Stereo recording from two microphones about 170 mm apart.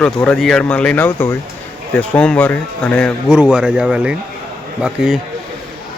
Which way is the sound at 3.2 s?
5° right (ahead or behind).